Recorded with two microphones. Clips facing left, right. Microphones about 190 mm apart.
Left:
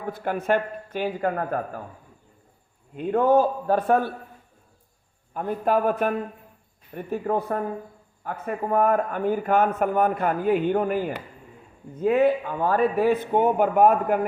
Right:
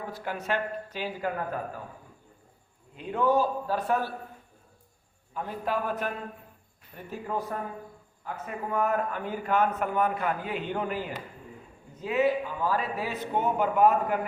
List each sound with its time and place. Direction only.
0.1 s a man's voice: 50° left (ahead or behind)
2.9 s a man's voice: 50° left (ahead or behind)
5.3 s a man's voice: 50° left (ahead or behind)